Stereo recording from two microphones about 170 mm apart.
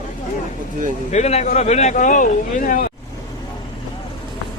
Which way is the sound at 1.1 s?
40° left (ahead or behind).